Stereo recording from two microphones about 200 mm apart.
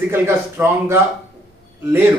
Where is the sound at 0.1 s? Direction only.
10° right (ahead or behind).